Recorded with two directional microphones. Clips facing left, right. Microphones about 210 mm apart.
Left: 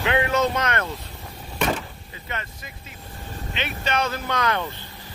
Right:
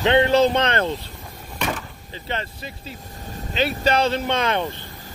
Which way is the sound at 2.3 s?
30° right (ahead or behind).